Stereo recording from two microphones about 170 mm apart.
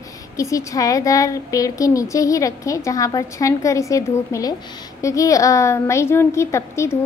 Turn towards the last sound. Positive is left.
turn(degrees=15)  # may be behind; listen again after turning